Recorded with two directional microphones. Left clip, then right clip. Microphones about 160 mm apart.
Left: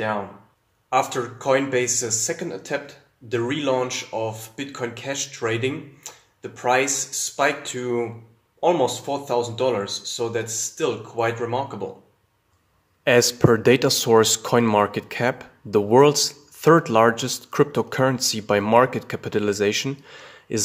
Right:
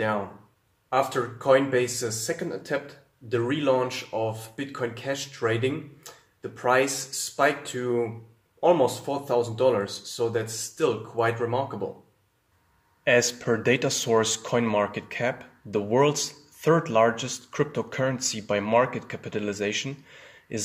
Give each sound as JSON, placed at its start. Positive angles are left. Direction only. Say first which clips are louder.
{"t": 0.8, "sound": "speech", "louder": "left 3 dB", "side_deg": 0}
{"t": 13.0, "sound": "speech", "louder": "left 5 dB", "side_deg": 40}